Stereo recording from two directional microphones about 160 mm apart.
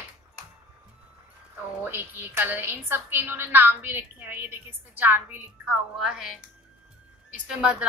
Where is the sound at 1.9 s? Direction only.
10° right (ahead or behind).